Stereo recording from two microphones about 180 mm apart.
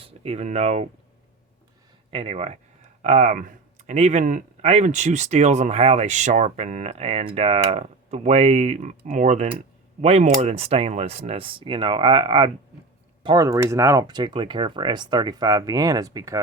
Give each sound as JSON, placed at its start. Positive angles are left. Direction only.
{"t": 0.0, "sound": "speech", "side_deg": -35}
{"t": 2.0, "sound": "speech", "side_deg": -30}